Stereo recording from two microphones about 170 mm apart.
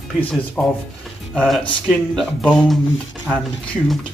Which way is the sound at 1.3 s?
Centre (ahead or behind).